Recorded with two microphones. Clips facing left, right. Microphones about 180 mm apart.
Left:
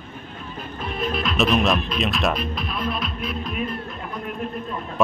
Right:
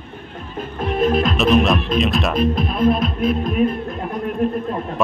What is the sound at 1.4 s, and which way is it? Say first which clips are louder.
Music: right 3 dB; centre (ahead or behind).